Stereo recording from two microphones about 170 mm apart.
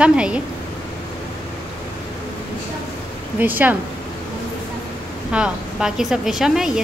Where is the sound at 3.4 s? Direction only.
10° right (ahead or behind).